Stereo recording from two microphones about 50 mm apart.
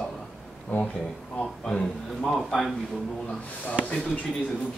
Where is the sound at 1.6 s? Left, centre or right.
Centre.